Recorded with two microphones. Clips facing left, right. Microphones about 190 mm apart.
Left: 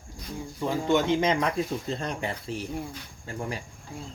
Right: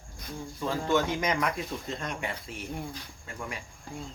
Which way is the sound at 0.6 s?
15° left (ahead or behind).